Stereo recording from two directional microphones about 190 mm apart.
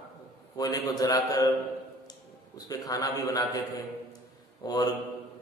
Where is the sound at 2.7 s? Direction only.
20° left (ahead or behind).